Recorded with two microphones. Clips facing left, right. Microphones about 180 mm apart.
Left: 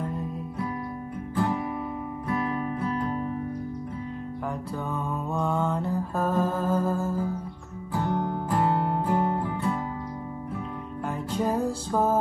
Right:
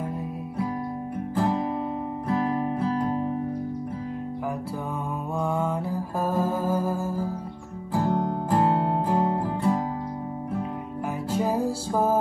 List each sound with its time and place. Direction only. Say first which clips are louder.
1.4 s guitar: right 2 dB; 30° right (ahead or behind)
2.4 s music: right 3 dB; 30° right (ahead or behind)
5.3 s music: right 1 dB; 10° right (ahead or behind)
7.9 s guitar: right 3 dB; 30° right (ahead or behind)
11.3 s music: right 1 dB; 10° right (ahead or behind)